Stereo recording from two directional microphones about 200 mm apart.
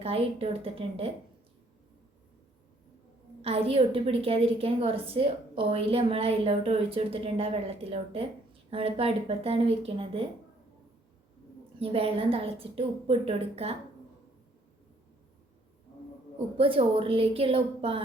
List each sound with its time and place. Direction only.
0.0 s a woman's voice: 30° right (ahead or behind)
3.4 s a woman's voice: 30° right (ahead or behind)
11.8 s a woman's voice: 30° right (ahead or behind)
16.6 s a woman's voice: 25° right (ahead or behind)